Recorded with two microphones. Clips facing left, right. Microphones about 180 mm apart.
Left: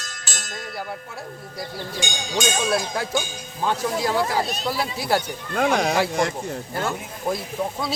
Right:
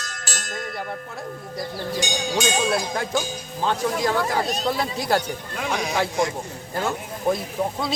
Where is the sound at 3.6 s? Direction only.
10° left (ahead or behind).